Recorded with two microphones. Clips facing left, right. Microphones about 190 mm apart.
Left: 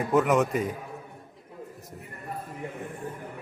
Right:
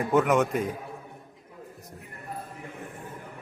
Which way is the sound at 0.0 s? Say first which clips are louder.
Even; centre (ahead or behind).